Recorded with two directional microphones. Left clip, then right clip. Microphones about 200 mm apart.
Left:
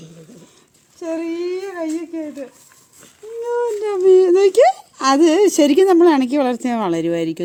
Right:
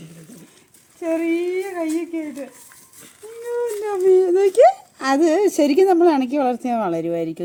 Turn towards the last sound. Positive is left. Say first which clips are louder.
# left 3 dB
turn(degrees=45)  # may be behind; listen again after turning